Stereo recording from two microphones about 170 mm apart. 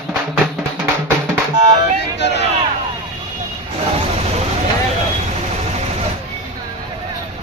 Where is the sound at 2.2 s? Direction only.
90° left.